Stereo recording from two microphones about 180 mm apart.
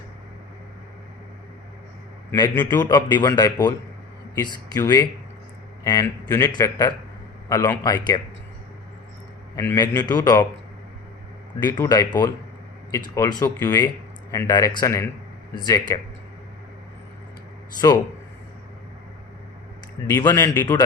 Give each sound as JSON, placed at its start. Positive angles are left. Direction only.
{"t": 2.6, "sound": "a man's voice", "side_deg": 25}
{"t": 9.6, "sound": "speech", "side_deg": 20}
{"t": 11.6, "sound": "speech", "side_deg": 20}
{"t": 17.7, "sound": "speech", "side_deg": 20}
{"t": 20.1, "sound": "speech", "side_deg": 15}